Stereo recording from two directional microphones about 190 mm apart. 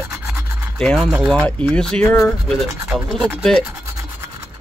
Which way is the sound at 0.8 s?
5° left (ahead or behind).